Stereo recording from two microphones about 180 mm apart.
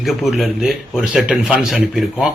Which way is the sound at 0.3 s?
Centre (ahead or behind).